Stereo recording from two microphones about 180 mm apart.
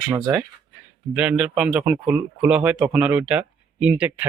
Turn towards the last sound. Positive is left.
turn(degrees=-10)  # may be behind; listen again after turning